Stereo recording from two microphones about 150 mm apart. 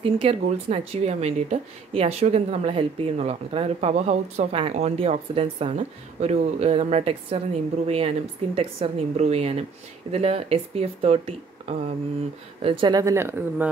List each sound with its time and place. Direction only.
0.0 s speech: 40° right (ahead or behind)
12.6 s speech: 30° right (ahead or behind); by 13.7 s 15° right (ahead or behind)